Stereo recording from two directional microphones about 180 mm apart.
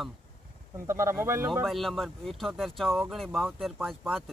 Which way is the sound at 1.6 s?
Centre (ahead or behind).